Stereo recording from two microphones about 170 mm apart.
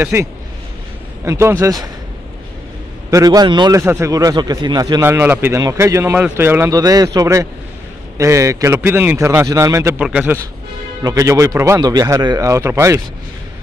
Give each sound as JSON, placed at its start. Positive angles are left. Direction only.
{"t": 0.0, "sound": "a man's voice", "side_deg": -15}
{"t": 3.1, "sound": "a man's voice", "side_deg": -20}
{"t": 5.0, "sound": "a man's voice", "side_deg": -10}
{"t": 9.9, "sound": "a man's voice", "side_deg": -5}
{"t": 11.0, "sound": "a man's voice", "side_deg": -20}